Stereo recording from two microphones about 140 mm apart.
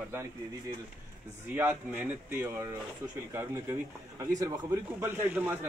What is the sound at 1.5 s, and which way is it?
A man's voice, 15° right (ahead or behind).